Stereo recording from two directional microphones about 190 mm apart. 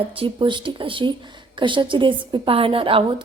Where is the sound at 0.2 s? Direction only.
25° right (ahead or behind).